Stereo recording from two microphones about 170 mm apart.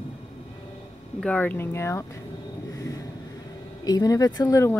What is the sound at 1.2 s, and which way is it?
Speech, 10° left (ahead or behind).